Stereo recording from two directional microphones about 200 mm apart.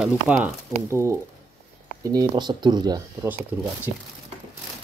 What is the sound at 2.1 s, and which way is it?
Speech, 20° right (ahead or behind).